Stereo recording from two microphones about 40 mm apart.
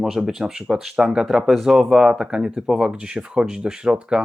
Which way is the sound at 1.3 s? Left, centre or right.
Centre.